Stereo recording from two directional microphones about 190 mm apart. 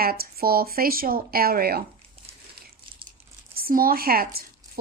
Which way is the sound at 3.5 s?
50° right (ahead or behind).